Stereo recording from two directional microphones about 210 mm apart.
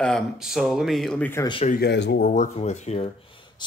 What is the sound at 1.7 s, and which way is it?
Speech, 50° left (ahead or behind).